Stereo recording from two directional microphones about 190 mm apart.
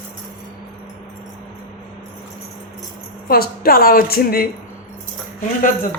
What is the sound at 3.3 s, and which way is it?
A woman's voice, 50° left (ahead or behind).